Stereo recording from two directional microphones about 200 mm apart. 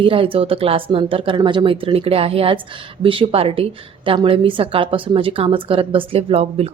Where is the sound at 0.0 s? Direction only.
25° right (ahead or behind).